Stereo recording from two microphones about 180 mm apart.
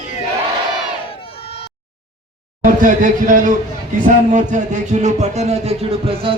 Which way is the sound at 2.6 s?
45° right (ahead or behind).